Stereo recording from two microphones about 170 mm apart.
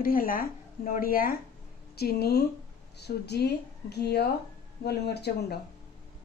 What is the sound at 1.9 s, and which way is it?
A woman's voice, 70° left (ahead or behind).